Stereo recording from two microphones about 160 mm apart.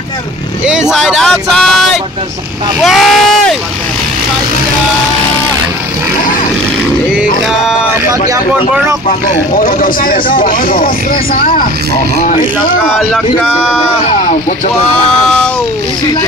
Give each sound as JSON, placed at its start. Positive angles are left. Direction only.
{"t": 0.7, "sound": "speech", "side_deg": 0}
{"t": 9.6, "sound": "speech", "side_deg": 60}
{"t": 13.1, "sound": "speech", "side_deg": -5}